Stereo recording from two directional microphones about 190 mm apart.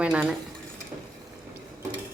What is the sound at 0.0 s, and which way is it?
Dishes, 5° right (ahead or behind).